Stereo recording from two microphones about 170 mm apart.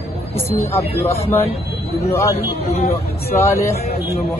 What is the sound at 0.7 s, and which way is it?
Speech, 15° left (ahead or behind).